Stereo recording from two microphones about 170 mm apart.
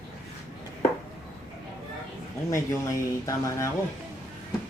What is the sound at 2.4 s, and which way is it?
Speech, 20° left (ahead or behind).